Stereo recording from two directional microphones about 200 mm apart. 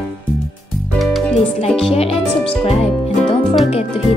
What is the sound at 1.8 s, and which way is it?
Music, 30° left (ahead or behind).